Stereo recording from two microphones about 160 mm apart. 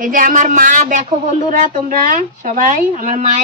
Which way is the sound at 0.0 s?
60° right (ahead or behind).